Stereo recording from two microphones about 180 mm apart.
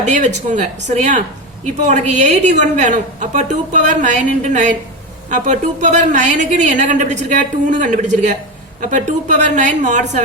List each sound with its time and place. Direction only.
0.0 s a woman's voice: 40° right (ahead or behind)